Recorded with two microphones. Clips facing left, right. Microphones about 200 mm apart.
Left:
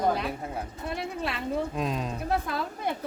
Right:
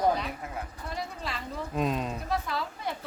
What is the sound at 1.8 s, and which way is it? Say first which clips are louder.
Speech: right 1 dB; centre (ahead or behind).